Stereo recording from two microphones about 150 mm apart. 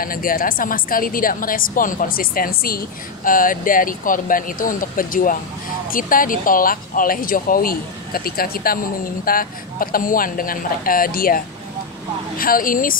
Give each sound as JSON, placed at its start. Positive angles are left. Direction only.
{"t": 0.0, "sound": "speech", "side_deg": 70}